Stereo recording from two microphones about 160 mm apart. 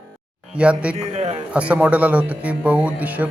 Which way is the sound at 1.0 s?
45° right (ahead or behind).